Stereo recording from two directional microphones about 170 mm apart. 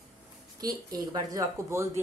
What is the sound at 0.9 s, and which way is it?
Speech, 20° right (ahead or behind).